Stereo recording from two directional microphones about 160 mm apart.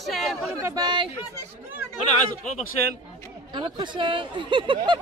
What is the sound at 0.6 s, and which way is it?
Speech, 25° right (ahead or behind).